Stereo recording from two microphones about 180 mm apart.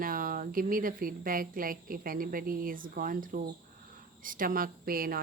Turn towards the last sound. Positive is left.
turn(degrees=-55)  # may be behind; listen again after turning